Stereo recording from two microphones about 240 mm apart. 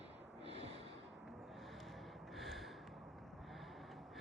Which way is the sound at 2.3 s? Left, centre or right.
Centre.